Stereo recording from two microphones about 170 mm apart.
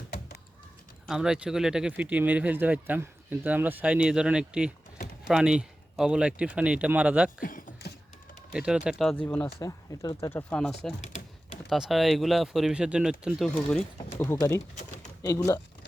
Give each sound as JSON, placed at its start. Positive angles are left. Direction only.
{"t": 1.0, "sound": "speech", "side_deg": -5}
{"t": 7.4, "sound": "a sound", "side_deg": 55}
{"t": 8.5, "sound": "speech", "side_deg": -5}
{"t": 9.6, "sound": "speech", "side_deg": 20}
{"t": 10.5, "sound": "speech", "side_deg": 5}
{"t": 14.2, "sound": "speech", "side_deg": 15}